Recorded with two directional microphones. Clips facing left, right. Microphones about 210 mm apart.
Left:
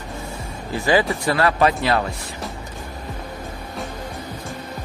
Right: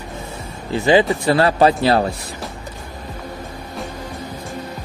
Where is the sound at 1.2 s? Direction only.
30° right (ahead or behind).